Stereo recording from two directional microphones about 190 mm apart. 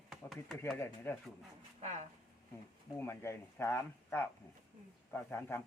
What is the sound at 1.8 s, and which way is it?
Speech, 40° right (ahead or behind).